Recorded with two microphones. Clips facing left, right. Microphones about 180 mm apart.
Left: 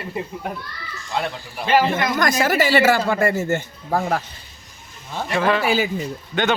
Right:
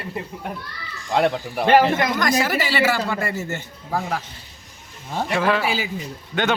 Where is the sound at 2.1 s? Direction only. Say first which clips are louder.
Left 2 dB; 45° left (ahead or behind).